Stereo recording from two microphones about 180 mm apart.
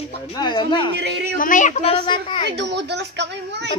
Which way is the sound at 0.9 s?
70° right (ahead or behind).